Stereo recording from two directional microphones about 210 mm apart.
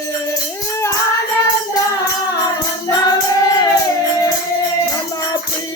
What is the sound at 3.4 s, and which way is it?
Music, 15° left (ahead or behind).